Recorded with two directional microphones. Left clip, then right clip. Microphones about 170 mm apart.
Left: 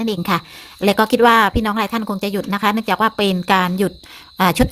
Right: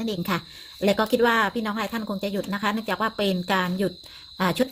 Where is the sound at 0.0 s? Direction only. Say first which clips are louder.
Left 8 dB; 35° left (ahead or behind).